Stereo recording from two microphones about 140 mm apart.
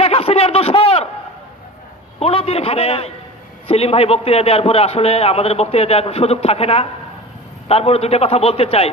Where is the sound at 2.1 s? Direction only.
45° left (ahead or behind).